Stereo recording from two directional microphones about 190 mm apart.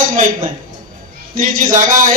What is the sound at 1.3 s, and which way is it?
Speech, 45° right (ahead or behind).